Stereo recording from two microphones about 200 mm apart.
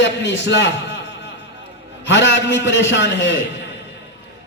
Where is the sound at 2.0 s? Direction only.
65° left (ahead or behind).